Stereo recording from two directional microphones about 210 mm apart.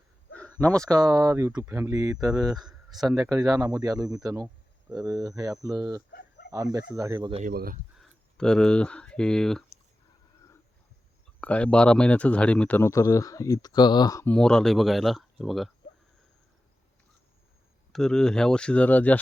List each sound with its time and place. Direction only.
0.3 s a sound: 5° left (ahead or behind)
0.9 s speech: 15° right (ahead or behind)
3.2 s speech: 15° right (ahead or behind)
6.1 s dog: 50° left (ahead or behind)
6.5 s speech: 15° right (ahead or behind)
7.4 s speech: 45° right (ahead or behind)
7.9 s speech: 5° left (ahead or behind)
11.3 s speech: 5° left (ahead or behind)
14.3 s speech: 5° left (ahead or behind)
17.9 s speech: 5° left (ahead or behind)